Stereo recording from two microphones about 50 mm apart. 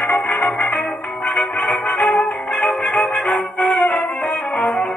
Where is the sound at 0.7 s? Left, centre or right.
Centre.